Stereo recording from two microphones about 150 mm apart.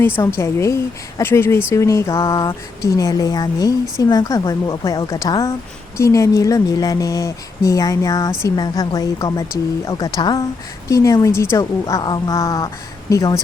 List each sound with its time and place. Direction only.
0.0 s a woman's voice: 15° left (ahead or behind)